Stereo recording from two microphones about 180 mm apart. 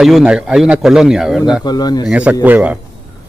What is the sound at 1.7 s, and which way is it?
Speech, 20° left (ahead or behind).